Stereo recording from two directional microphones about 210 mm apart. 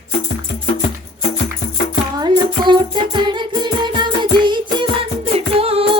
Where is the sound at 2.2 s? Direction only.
20° right (ahead or behind).